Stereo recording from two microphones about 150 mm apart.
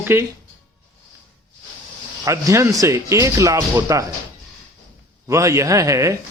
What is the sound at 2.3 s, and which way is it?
Speech, 20° right (ahead or behind).